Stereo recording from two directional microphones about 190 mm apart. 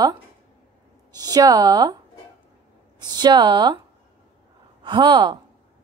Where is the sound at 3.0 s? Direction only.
20° right (ahead or behind).